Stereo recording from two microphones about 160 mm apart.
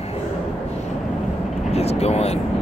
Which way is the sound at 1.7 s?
40° left (ahead or behind).